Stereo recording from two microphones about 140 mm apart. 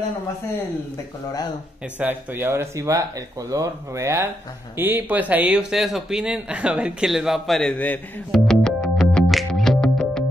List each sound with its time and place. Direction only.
2.0 s speech: 15° right (ahead or behind); by 10.2 s 5° left (ahead or behind)